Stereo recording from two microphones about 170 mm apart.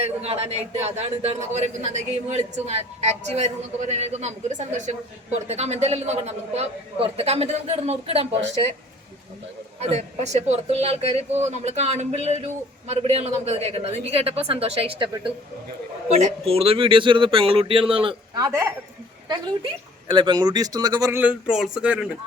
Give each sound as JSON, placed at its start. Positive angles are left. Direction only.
{"t": 0.0, "sound": "a man's voice", "side_deg": -35}
{"t": 9.8, "sound": "a man's voice", "side_deg": -40}
{"t": 20.1, "sound": "speech", "side_deg": -25}